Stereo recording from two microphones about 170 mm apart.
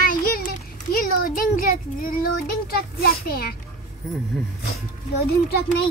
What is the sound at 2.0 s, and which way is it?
A woman's voice, 55° left (ahead or behind).